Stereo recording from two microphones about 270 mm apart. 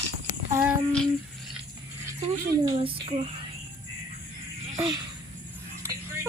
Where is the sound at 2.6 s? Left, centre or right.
Centre.